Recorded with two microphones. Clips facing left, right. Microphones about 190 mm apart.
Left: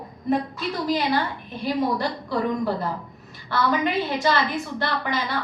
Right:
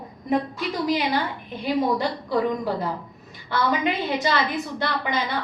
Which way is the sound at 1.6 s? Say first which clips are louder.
Right 1 dB; 20° right (ahead or behind).